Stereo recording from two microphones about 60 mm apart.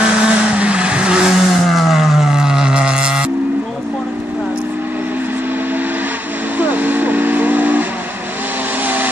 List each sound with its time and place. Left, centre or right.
0.0 s vehicle: centre
1.6 s music: centre
6.6 s vehicle: right
8.8 s vehicle: right